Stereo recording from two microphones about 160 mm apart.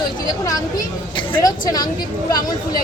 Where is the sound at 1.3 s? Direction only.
25° left (ahead or behind).